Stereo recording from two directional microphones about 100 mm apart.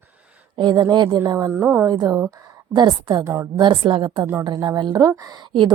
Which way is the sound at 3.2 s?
25° right (ahead or behind).